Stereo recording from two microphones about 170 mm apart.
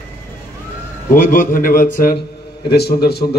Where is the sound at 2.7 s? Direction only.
70° left (ahead or behind).